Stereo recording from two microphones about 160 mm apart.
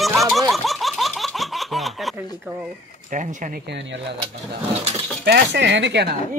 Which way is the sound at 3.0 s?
55° right (ahead or behind).